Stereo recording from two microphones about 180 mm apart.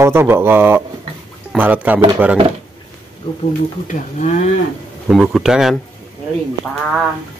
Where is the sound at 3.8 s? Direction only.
40° left (ahead or behind).